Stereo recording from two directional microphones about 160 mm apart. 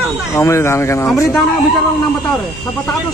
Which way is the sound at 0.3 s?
15° left (ahead or behind).